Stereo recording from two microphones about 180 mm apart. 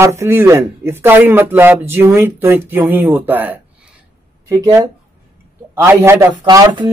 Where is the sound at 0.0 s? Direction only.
15° right (ahead or behind).